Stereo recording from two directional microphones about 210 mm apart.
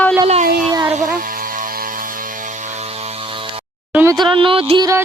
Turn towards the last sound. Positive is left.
turn(degrees=-15)  # may be behind; listen again after turning